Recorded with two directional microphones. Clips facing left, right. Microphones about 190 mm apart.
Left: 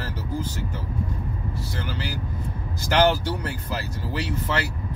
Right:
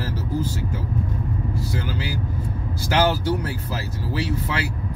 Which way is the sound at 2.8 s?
5° right (ahead or behind).